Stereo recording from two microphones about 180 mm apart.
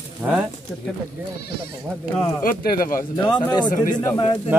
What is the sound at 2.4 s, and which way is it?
Speech, 50° left (ahead or behind).